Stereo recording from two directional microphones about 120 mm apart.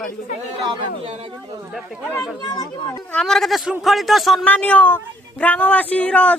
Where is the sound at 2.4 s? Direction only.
35° left (ahead or behind).